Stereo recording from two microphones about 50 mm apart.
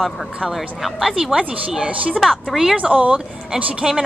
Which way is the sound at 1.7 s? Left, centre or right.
Centre.